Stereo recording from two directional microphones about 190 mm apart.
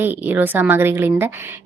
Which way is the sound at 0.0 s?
10° right (ahead or behind).